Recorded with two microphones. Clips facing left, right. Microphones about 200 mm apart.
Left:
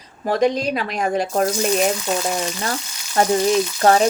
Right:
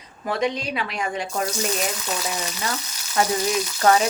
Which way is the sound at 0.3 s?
40° left (ahead or behind).